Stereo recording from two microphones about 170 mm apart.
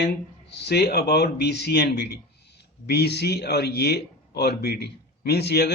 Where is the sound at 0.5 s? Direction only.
75° left (ahead or behind).